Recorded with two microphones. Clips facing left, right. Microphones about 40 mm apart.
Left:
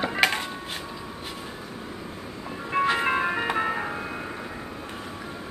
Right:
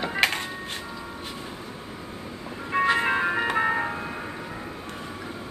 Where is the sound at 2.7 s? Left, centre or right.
Centre.